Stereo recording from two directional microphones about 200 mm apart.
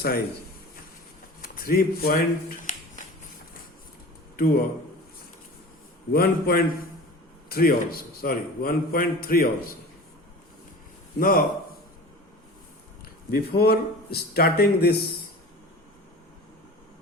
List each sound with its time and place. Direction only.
1.4 s a sound: 45° left (ahead or behind)
4.4 s a man's voice: 50° left (ahead or behind)
6.1 s a man's voice: 50° left (ahead or behind)
11.2 s a man's voice: 45° left (ahead or behind)
13.3 s a man's voice: 50° left (ahead or behind)